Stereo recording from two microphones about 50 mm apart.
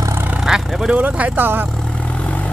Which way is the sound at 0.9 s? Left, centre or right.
Right.